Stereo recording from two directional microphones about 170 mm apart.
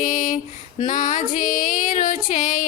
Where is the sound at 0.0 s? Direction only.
50° left (ahead or behind).